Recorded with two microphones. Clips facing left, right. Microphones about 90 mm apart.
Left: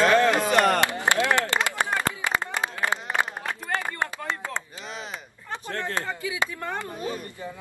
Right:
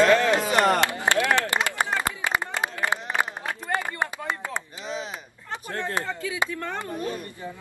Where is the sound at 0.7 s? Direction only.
20° left (ahead or behind).